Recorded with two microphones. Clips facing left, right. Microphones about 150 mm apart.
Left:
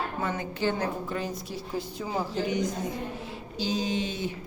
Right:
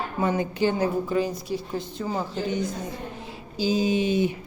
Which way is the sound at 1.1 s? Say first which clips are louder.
Right 7 dB; 5° right (ahead or behind).